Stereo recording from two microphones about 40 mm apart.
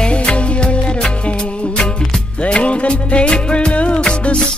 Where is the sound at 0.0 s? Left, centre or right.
Left.